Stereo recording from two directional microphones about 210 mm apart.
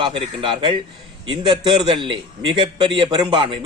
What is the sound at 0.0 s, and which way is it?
Speech, 25° right (ahead or behind).